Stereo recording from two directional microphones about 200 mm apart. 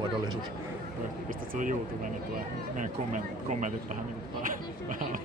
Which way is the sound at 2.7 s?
40° right (ahead or behind).